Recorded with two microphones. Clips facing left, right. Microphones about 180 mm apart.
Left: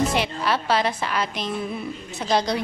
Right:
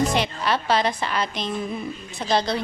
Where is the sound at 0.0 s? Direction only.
5° left (ahead or behind).